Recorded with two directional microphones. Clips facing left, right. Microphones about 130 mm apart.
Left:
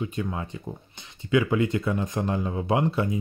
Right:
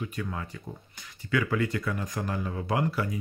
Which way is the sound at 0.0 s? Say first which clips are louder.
Left 4 dB; 20° left (ahead or behind).